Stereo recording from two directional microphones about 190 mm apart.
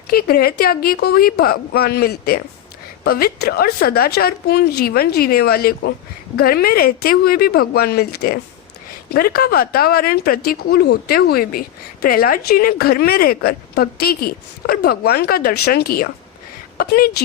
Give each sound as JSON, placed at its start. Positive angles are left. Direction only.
{"t": 0.1, "sound": "a woman's voice", "side_deg": 50}